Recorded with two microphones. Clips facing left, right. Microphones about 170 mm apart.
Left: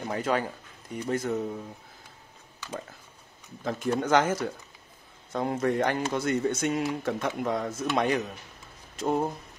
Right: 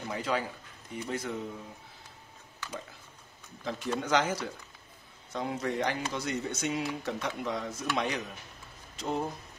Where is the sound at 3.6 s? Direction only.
50° left (ahead or behind).